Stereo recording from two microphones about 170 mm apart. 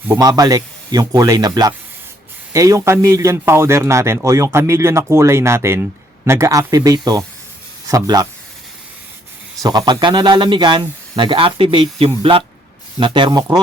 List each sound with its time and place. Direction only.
0.1 s a man's voice: 20° right (ahead or behind)
9.6 s speech: 25° right (ahead or behind)